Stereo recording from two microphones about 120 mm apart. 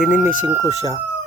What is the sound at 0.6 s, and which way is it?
Speech, 30° left (ahead or behind).